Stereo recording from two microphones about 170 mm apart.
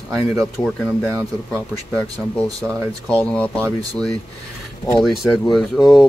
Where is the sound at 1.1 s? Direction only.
15° right (ahead or behind).